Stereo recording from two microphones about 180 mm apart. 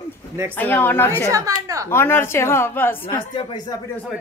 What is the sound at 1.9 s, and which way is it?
Speech, 15° left (ahead or behind).